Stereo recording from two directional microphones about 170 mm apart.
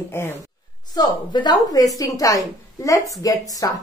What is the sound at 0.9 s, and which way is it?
A woman's voice, 25° left (ahead or behind).